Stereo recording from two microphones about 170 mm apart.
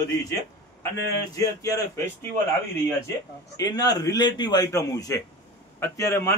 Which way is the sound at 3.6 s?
20° left (ahead or behind).